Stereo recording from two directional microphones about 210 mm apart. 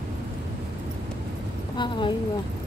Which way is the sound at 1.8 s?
20° left (ahead or behind).